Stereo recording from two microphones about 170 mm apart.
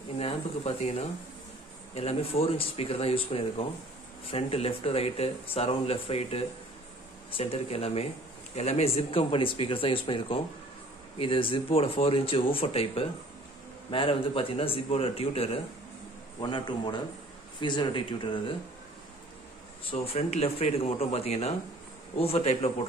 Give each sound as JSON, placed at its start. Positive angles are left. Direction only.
{"t": 0.2, "sound": "speech", "side_deg": 35}
{"t": 19.8, "sound": "speech", "side_deg": 35}